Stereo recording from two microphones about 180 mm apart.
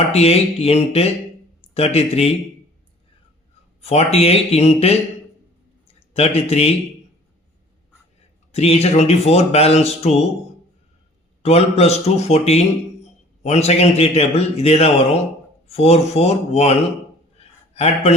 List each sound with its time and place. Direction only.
0.1 s a man's voice: 35° left (ahead or behind)
3.8 s a man's voice: 35° left (ahead or behind)
8.5 s a man's voice: 35° left (ahead or behind)
11.4 s a man's voice: 35° left (ahead or behind)
17.3 s a sound: 35° left (ahead or behind)